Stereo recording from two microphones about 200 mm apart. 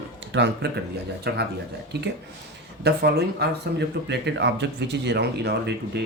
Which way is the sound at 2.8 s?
55° right (ahead or behind).